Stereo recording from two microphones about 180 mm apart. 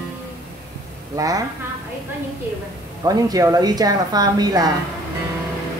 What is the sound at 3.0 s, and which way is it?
A woman's voice, 20° right (ahead or behind).